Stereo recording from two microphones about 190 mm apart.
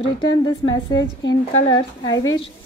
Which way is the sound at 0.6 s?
20° left (ahead or behind).